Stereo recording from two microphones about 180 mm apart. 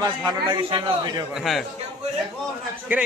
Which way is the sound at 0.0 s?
25° right (ahead or behind).